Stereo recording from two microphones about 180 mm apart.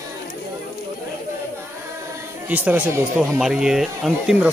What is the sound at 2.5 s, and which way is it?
Speech, 10° right (ahead or behind).